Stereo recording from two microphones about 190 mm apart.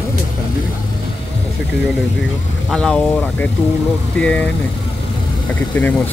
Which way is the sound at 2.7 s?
5° left (ahead or behind).